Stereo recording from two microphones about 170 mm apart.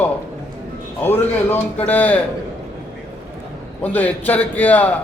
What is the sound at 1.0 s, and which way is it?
A man's voice, 10° left (ahead or behind).